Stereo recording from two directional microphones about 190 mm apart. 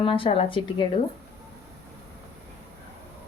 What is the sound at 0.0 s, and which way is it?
Speech, 25° left (ahead or behind).